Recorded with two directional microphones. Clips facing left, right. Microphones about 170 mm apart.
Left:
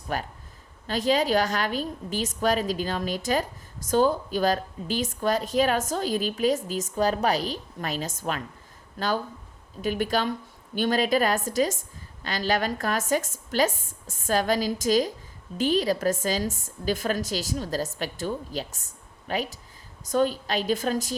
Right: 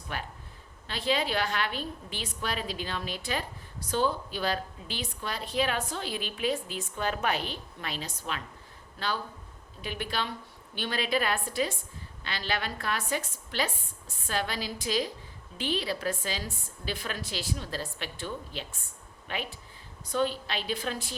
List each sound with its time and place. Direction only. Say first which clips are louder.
0.1 s a woman's voice: left 7 dB; 40° left (ahead or behind)